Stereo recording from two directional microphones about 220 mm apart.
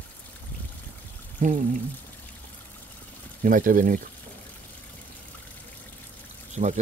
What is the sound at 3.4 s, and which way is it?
Speech, 40° right (ahead or behind).